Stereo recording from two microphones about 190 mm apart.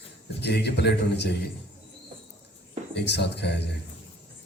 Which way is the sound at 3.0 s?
65° left (ahead or behind).